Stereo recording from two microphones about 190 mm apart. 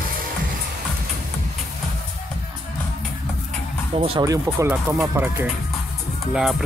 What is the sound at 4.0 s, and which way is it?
Speech, 30° right (ahead or behind).